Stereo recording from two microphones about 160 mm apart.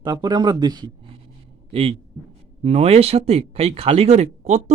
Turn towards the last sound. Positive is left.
turn(degrees=-45)  # may be behind; listen again after turning